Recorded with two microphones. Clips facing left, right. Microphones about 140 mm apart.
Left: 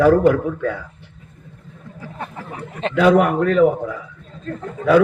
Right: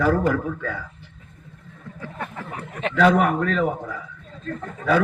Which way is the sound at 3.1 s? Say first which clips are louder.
Left 6 dB; 60° left (ahead or behind).